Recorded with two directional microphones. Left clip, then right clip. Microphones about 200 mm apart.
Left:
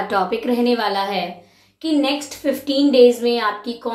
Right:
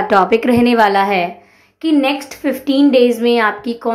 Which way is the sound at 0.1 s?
45° right (ahead or behind).